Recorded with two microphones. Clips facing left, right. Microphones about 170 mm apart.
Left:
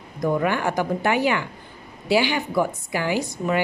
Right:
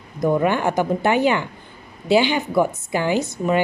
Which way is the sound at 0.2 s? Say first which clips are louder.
Right 3 dB; 25° right (ahead or behind).